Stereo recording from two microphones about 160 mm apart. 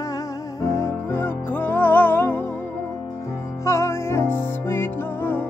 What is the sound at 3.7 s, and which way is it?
Music, 15° left (ahead or behind).